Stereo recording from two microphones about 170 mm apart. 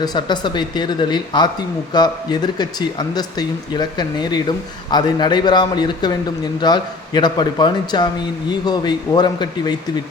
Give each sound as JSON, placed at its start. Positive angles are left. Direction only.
{"t": 0.0, "sound": "speech", "side_deg": 25}